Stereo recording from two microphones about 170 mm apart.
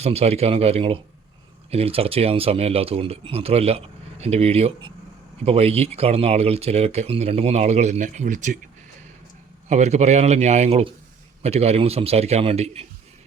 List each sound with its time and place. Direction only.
0.0 s speech: 35° right (ahead or behind)
9.6 s speech: 40° right (ahead or behind)